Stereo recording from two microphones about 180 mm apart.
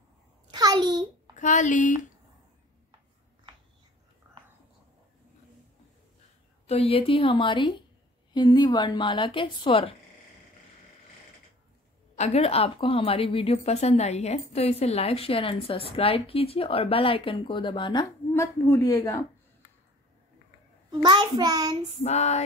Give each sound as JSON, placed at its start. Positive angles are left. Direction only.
{"t": 0.5, "sound": "a sound", "side_deg": -25}
{"t": 1.3, "sound": "speech", "side_deg": 45}
{"t": 6.7, "sound": "a woman's voice", "side_deg": 35}
{"t": 12.2, "sound": "a woman's voice", "side_deg": 35}
{"t": 18.3, "sound": "a man's voice", "side_deg": 15}
{"t": 20.9, "sound": "a child's voice", "side_deg": -25}
{"t": 22.0, "sound": "a woman's voice", "side_deg": 40}